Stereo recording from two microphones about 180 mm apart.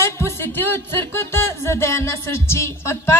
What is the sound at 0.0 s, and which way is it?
Speech, 15° left (ahead or behind).